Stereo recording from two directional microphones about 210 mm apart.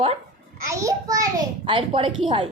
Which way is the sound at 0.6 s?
15° right (ahead or behind).